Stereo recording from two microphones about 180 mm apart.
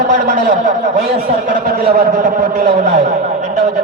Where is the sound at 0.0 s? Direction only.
45° right (ahead or behind).